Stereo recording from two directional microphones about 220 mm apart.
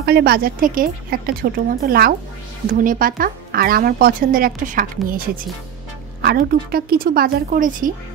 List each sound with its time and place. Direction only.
0.0 s a woman's voice: 45° right (ahead or behind)